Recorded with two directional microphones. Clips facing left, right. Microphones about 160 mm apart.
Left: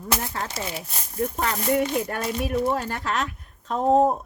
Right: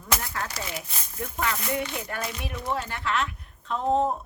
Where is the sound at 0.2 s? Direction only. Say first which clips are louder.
Left 3 dB; 25° left (ahead or behind).